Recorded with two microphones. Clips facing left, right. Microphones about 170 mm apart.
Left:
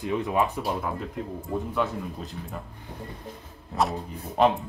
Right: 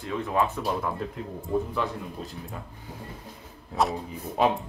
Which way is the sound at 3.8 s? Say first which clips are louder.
Even; centre (ahead or behind).